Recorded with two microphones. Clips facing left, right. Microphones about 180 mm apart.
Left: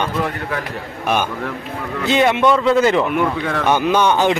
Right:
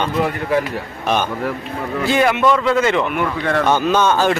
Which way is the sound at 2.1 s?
20° left (ahead or behind).